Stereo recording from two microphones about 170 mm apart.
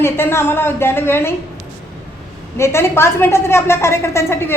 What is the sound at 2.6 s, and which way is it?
A woman's voice, 15° left (ahead or behind).